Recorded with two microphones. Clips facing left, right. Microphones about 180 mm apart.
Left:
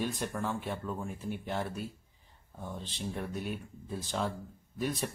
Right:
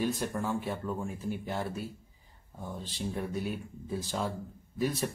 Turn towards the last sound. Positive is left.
turn(degrees=0)  # may be behind; listen again after turning